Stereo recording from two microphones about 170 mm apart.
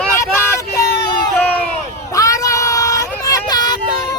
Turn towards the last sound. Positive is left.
turn(degrees=25)  # may be behind; listen again after turning